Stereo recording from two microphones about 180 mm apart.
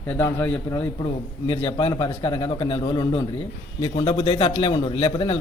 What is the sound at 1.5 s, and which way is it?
A man's voice, 25° left (ahead or behind).